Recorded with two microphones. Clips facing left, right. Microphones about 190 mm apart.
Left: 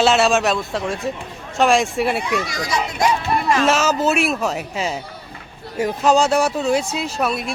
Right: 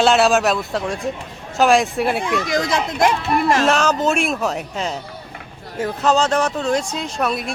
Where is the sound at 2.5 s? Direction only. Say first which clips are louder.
Right 4 dB; 55° right (ahead or behind).